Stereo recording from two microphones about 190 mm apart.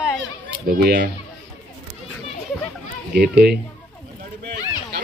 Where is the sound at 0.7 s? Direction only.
55° right (ahead or behind).